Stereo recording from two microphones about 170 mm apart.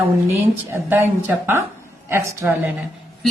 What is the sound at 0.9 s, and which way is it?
A woman's voice, 10° right (ahead or behind).